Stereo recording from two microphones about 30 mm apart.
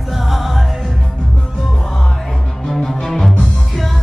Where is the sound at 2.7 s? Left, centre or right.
Centre.